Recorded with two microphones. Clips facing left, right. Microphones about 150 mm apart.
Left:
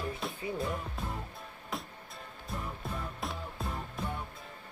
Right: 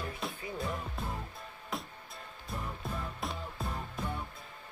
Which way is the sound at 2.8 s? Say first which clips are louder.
Even; centre (ahead or behind).